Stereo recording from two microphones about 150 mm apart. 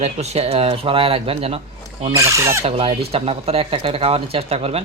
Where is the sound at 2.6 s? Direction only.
40° right (ahead or behind).